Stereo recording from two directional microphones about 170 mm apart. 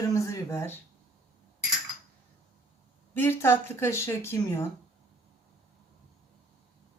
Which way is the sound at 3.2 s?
15° left (ahead or behind).